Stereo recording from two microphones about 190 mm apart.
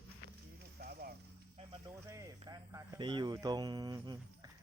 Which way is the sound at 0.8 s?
55° right (ahead or behind).